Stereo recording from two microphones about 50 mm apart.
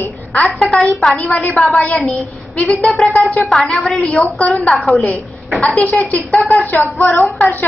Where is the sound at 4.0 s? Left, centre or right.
Left.